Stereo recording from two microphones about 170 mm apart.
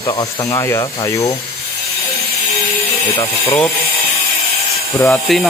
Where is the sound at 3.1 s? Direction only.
30° left (ahead or behind).